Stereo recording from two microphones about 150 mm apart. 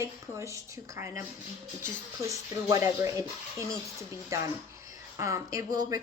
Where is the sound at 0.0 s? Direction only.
20° right (ahead or behind).